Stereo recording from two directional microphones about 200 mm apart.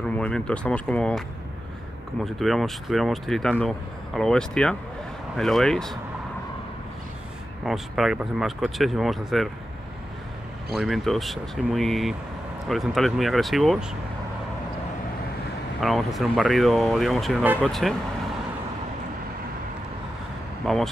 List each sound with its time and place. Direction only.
0.2 s speech: 5° left (ahead or behind)
2.2 s speech: centre (ahead or behind)
7.6 s speech: centre (ahead or behind)
10.7 s speech: centre (ahead or behind)
15.8 s speech: centre (ahead or behind)
20.6 s speech: centre (ahead or behind)